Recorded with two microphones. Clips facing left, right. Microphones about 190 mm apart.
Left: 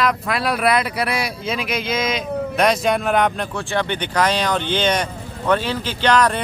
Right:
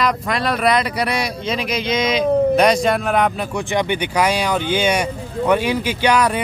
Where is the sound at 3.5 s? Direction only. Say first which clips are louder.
Right 3 dB; 15° right (ahead or behind).